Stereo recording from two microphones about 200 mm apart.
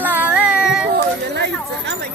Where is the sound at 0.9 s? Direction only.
55° right (ahead or behind).